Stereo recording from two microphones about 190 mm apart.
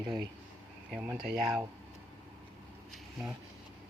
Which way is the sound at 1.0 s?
5° right (ahead or behind).